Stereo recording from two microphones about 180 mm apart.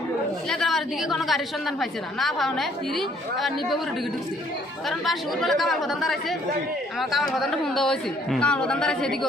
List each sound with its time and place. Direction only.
0.5 s a woman's voice: centre (ahead or behind)
4.9 s a woman's voice: centre (ahead or behind)